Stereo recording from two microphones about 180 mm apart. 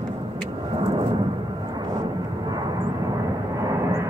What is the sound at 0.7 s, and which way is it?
Vehicle, 30° right (ahead or behind).